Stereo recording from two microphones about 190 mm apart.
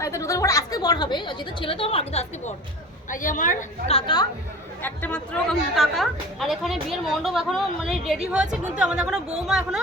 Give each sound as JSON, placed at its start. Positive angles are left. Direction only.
{"t": 0.0, "sound": "a woman's voice", "side_deg": 15}
{"t": 3.1, "sound": "a woman's voice", "side_deg": 45}
{"t": 3.8, "sound": "a woman's voice", "side_deg": 25}
{"t": 4.8, "sound": "speech", "side_deg": 10}